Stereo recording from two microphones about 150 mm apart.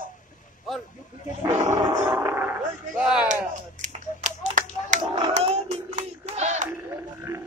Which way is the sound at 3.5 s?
55° right (ahead or behind).